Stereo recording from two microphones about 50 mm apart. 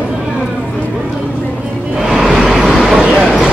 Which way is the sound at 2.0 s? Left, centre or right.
Centre.